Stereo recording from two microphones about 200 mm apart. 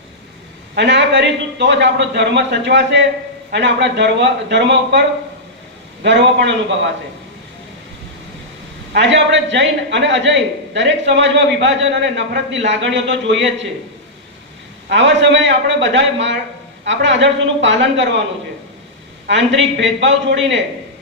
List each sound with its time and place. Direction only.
0.8 s a man's voice: 60° right (ahead or behind)
8.9 s a man's voice: 65° right (ahead or behind)
14.8 s a man's voice: 65° right (ahead or behind)
19.3 s a man's voice: 65° right (ahead or behind)